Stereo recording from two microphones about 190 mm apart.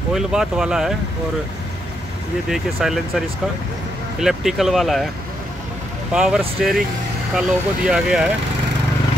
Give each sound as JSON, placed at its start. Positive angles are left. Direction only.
{"t": 0.1, "sound": "speech", "side_deg": -5}
{"t": 2.5, "sound": "speech", "side_deg": 0}
{"t": 6.1, "sound": "speech", "side_deg": 0}